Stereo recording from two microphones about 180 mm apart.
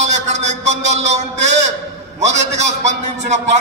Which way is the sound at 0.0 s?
40° right (ahead or behind).